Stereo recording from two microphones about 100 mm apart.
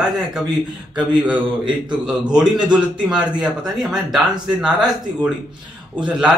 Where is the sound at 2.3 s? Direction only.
10° right (ahead or behind).